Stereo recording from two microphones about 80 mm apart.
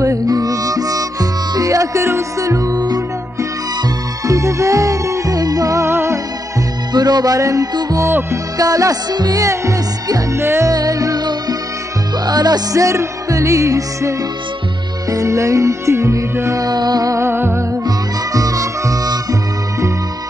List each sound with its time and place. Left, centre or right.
0.0 s music: right
4.3 s music: right
5.9 s music: right
6.9 s music: right
7.3 s music: right
8.5 s music: right
10.4 s music: right
10.7 s music: right
12.8 s music: right
16.6 s music: right
17.2 s music: right
17.8 s music: right